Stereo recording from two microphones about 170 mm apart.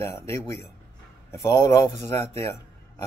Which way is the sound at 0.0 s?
15° left (ahead or behind).